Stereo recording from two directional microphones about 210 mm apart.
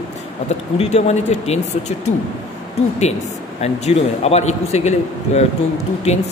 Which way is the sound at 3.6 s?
30° left (ahead or behind).